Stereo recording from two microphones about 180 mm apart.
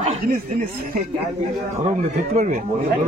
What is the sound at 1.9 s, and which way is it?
Speech, 45° right (ahead or behind).